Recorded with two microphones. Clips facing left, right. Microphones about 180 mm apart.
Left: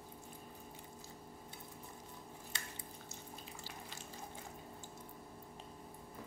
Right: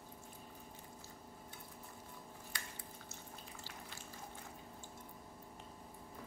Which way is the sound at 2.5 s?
25° left (ahead or behind).